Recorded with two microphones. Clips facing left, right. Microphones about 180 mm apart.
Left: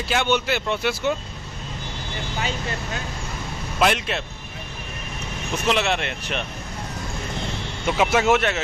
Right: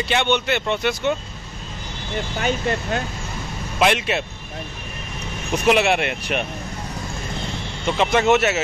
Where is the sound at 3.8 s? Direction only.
5° right (ahead or behind).